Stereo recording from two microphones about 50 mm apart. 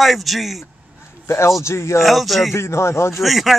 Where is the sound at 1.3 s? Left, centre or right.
Left.